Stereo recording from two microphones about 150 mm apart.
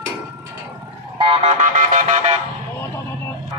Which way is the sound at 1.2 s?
40° right (ahead or behind).